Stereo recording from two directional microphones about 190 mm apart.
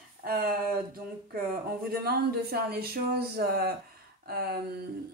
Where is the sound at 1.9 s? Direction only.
55° right (ahead or behind).